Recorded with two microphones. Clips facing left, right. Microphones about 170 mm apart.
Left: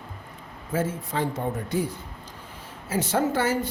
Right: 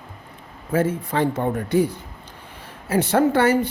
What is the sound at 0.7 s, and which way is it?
Speech, 65° right (ahead or behind).